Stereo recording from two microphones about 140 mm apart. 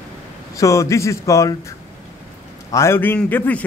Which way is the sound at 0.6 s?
20° left (ahead or behind).